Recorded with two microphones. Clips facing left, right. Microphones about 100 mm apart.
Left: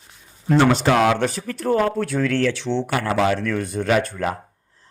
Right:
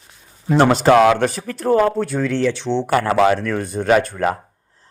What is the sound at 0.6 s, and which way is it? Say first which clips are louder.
Speech: right 5 dB; 40° right (ahead or behind).